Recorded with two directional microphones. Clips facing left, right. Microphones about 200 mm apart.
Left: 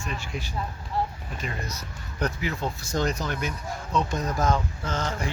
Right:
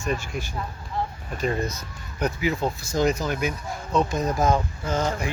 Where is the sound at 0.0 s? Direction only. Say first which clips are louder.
Right 6 dB; 45° right (ahead or behind).